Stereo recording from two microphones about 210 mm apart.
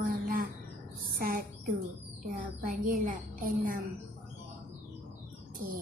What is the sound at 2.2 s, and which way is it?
A woman's voice, 40° right (ahead or behind).